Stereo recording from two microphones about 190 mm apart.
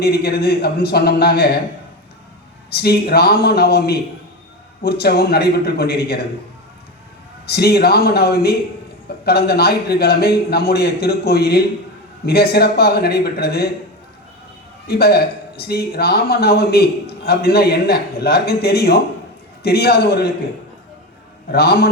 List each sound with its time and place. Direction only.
0.0 s speech: 55° left (ahead or behind)
2.6 s speech: 55° left (ahead or behind)
7.4 s speech: 55° left (ahead or behind)
14.8 s speech: 55° left (ahead or behind)
21.5 s speech: 60° left (ahead or behind)